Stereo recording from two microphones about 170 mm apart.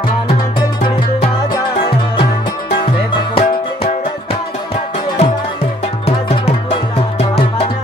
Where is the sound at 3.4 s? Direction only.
35° left (ahead or behind).